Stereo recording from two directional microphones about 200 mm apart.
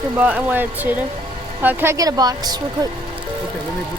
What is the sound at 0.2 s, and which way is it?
A woman's voice, 10° right (ahead or behind).